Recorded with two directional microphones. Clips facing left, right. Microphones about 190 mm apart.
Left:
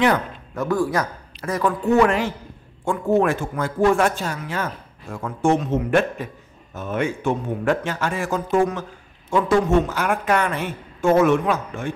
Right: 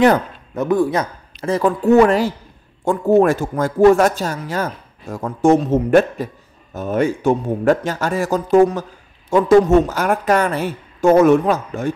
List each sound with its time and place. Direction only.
0.6 s a man's voice: 20° right (ahead or behind); by 11.9 s 40° right (ahead or behind)